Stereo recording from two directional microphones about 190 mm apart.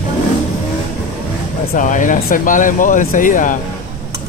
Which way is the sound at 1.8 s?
45° left (ahead or behind).